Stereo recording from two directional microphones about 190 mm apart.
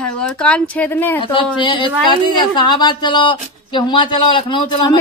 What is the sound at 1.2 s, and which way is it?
Speech, 25° left (ahead or behind).